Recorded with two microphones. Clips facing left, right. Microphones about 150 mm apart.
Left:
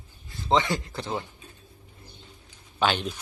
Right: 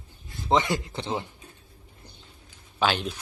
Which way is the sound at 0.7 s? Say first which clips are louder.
Right 1 dB; 20° right (ahead or behind).